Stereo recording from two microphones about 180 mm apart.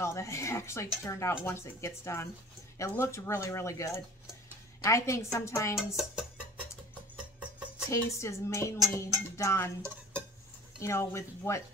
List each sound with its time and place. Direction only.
0.0 s speech: 15° left (ahead or behind)
5.8 s music: centre (ahead or behind)
7.9 s speech: 15° left (ahead or behind)
9.8 s music: 15° right (ahead or behind)
10.8 s speech: 15° left (ahead or behind)